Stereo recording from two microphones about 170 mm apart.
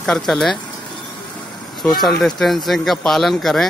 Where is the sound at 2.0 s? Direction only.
Centre (ahead or behind).